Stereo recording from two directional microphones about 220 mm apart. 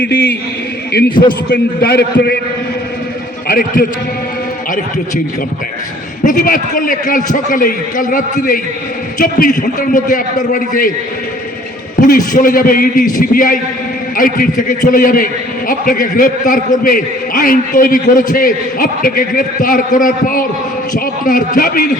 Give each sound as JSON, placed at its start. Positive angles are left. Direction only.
{"t": 1.5, "sound": "a man's voice", "side_deg": 45}
{"t": 3.4, "sound": "a man's voice", "side_deg": 40}
{"t": 6.2, "sound": "a man's voice", "side_deg": 40}
{"t": 11.9, "sound": "a man's voice", "side_deg": 35}